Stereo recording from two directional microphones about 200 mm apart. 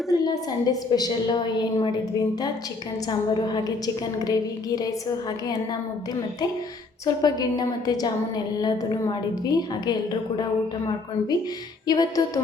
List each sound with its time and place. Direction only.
0.1 s a woman's voice: 20° left (ahead or behind)
7.0 s a woman's voice: 20° left (ahead or behind)
11.9 s a woman's voice: 20° left (ahead or behind)